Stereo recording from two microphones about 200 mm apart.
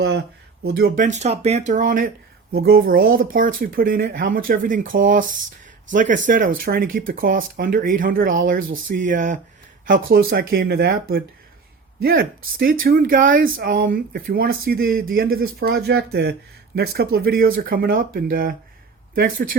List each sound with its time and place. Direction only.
0.6 s speech: 50° right (ahead or behind)